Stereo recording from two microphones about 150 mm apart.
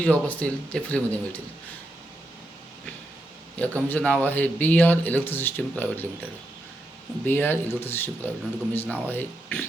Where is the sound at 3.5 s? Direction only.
10° left (ahead or behind).